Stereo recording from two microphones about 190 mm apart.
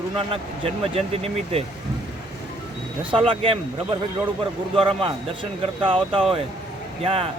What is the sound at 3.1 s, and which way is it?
Speech, 30° right (ahead or behind).